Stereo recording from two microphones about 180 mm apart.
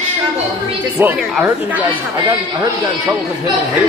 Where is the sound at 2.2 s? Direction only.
20° right (ahead or behind).